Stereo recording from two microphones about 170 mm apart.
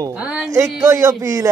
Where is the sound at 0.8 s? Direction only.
20° right (ahead or behind).